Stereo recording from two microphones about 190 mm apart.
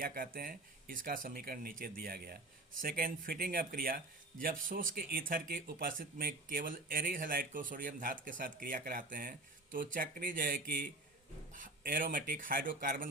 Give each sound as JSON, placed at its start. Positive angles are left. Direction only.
{"t": 0.0, "sound": "speech", "side_deg": -50}